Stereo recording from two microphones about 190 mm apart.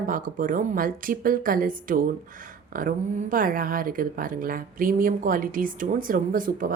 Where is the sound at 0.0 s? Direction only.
45° right (ahead or behind).